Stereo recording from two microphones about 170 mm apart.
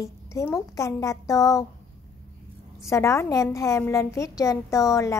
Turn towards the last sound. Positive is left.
turn(degrees=20)  # may be behind; listen again after turning